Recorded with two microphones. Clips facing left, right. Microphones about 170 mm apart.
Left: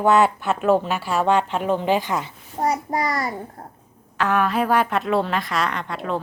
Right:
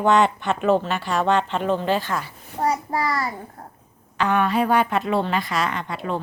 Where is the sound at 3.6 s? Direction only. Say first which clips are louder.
Left 2 dB; 30° left (ahead or behind).